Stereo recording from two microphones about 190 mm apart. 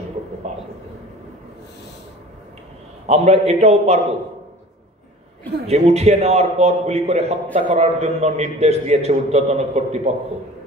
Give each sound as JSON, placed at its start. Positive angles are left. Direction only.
{"t": 3.1, "sound": "a man's voice", "side_deg": -35}
{"t": 5.7, "sound": "a man's voice", "side_deg": -35}